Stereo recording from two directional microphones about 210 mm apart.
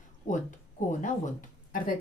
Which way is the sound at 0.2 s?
40° left (ahead or behind).